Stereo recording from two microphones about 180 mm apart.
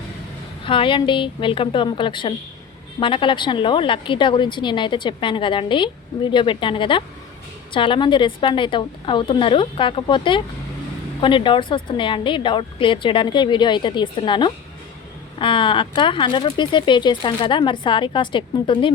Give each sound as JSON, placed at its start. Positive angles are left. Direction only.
{"t": 0.6, "sound": "speech", "side_deg": 30}